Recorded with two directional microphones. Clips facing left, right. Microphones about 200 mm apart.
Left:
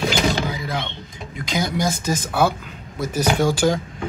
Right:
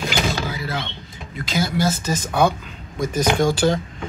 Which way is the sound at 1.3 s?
15° left (ahead or behind).